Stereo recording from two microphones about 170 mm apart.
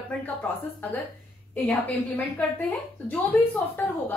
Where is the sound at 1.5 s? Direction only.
10° left (ahead or behind).